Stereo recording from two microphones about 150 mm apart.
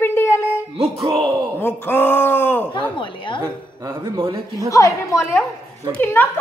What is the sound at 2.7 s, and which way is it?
Speech, 35° left (ahead or behind).